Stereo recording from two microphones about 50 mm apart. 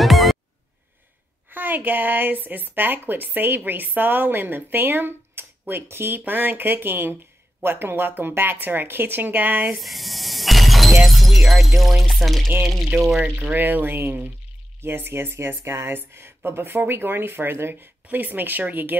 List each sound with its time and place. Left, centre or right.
0.0 s music: centre
1.5 s speech: right
9.8 s a sound: centre
11.1 s speech: centre
13.2 s speech: right
18.0 s speech: right